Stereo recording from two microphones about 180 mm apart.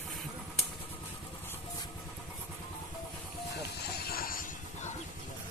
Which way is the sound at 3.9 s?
55° left (ahead or behind).